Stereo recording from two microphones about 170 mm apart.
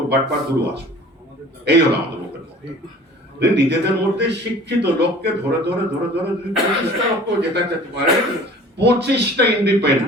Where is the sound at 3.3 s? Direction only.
80° right.